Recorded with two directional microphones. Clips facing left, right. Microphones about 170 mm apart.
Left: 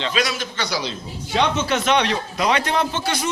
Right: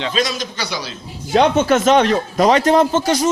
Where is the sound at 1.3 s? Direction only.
45° right (ahead or behind).